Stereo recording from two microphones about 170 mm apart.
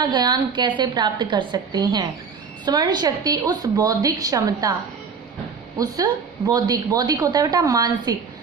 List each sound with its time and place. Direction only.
0.0 s a woman's voice: 25° right (ahead or behind)
5.7 s a woman's voice: 20° right (ahead or behind)